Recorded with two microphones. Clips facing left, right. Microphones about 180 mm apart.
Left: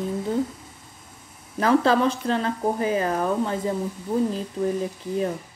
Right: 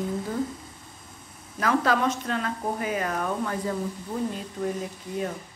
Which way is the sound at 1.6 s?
30° left (ahead or behind).